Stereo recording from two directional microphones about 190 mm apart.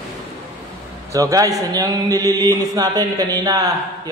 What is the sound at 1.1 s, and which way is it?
Speech, 15° right (ahead or behind).